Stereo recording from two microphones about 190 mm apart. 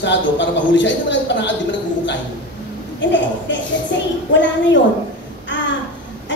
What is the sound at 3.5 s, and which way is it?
Speech, 70° left (ahead or behind).